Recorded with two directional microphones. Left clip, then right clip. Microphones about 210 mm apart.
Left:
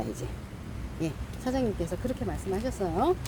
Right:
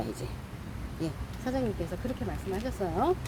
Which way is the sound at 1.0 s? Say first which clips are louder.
Left 2 dB; 20° left (ahead or behind).